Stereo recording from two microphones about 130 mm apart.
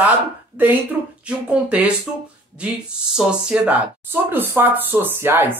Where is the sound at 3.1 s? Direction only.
5° right (ahead or behind).